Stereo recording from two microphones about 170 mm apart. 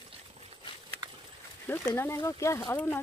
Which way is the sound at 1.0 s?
25° right (ahead or behind).